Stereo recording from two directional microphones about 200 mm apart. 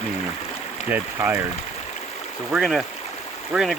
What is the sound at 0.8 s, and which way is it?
Speech, 10° right (ahead or behind).